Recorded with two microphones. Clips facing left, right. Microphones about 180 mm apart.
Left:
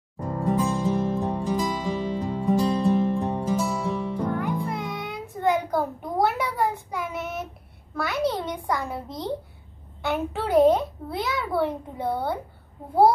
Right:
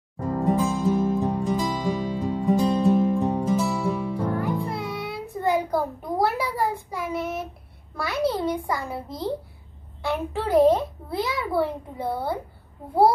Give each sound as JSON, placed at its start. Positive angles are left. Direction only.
{"t": 0.4, "sound": "music", "side_deg": 0}
{"t": 4.7, "sound": "music", "side_deg": 15}
{"t": 5.2, "sound": "a sound", "side_deg": 0}
{"t": 10.1, "sound": "a child's voice", "side_deg": 0}